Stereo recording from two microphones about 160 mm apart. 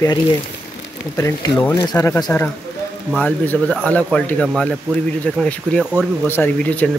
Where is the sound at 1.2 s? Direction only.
20° left (ahead or behind).